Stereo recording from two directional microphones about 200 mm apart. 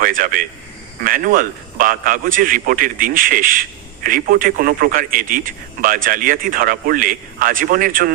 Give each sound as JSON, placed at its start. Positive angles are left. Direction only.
{"t": 0.0, "sound": "a man's voice", "side_deg": -45}